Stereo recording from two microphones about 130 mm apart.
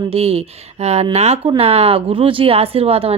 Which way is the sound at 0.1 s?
50° right (ahead or behind).